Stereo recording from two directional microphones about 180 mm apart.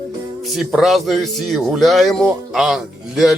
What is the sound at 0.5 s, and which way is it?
Speech, centre (ahead or behind).